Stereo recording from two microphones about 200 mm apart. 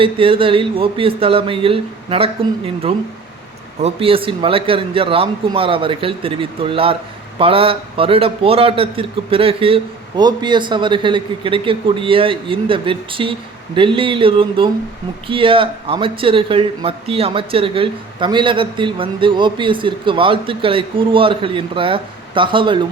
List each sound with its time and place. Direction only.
0.0 s speech: 25° right (ahead or behind)